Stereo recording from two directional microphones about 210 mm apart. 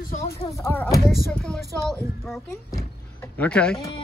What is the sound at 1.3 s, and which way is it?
Speech, centre (ahead or behind).